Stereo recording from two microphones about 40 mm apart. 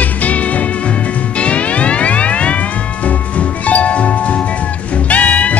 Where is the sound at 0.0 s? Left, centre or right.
Left.